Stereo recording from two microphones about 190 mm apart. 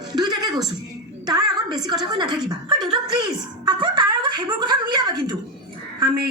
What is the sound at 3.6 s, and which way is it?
A woman's voice, 25° right (ahead or behind).